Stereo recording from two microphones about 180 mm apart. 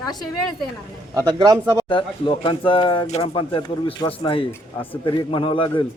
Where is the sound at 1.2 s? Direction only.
20° right (ahead or behind).